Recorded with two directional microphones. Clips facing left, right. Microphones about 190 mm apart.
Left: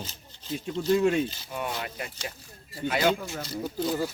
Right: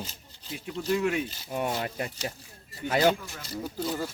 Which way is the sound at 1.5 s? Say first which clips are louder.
Right 3 dB; 40° right (ahead or behind).